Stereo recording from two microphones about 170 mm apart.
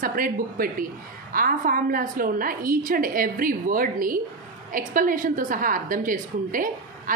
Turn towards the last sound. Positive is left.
turn(degrees=-50)  # may be behind; listen again after turning